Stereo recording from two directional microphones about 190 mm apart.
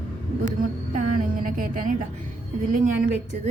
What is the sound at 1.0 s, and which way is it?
Speech, 45° right (ahead or behind).